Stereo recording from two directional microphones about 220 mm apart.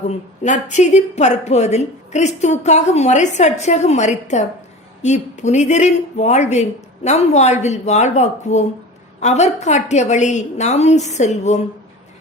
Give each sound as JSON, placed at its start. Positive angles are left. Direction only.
{"t": 0.4, "sound": "a woman's voice", "side_deg": 35}